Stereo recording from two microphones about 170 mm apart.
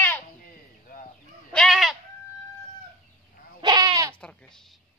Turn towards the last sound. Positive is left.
turn(degrees=5)  # may be behind; listen again after turning